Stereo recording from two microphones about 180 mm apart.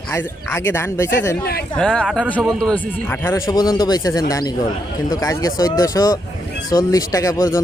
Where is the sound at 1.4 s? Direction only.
60° left (ahead or behind).